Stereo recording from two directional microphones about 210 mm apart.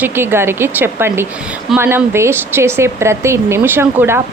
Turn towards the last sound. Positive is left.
turn(degrees=-10)  # may be behind; listen again after turning